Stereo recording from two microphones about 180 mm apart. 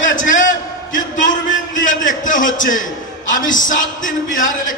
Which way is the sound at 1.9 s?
45° left (ahead or behind).